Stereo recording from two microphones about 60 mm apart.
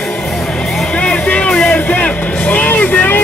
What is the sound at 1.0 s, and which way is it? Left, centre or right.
Music, left.